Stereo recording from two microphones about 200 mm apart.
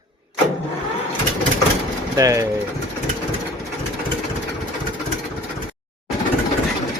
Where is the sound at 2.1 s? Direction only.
15° right (ahead or behind).